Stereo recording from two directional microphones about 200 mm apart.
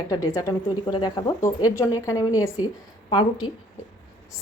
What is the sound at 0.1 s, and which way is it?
A woman's voice, 15° left (ahead or behind).